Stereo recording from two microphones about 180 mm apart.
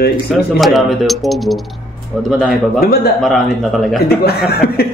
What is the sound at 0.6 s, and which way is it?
A man's voice, centre (ahead or behind).